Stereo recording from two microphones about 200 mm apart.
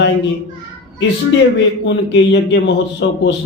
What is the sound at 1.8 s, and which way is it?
A man's voice, 65° left (ahead or behind).